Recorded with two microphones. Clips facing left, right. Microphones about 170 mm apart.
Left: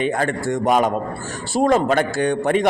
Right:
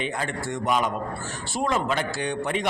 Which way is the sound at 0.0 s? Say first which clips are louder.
Left 8 dB; 50° left (ahead or behind).